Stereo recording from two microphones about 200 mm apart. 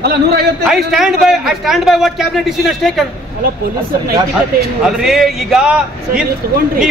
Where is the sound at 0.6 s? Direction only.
Centre (ahead or behind).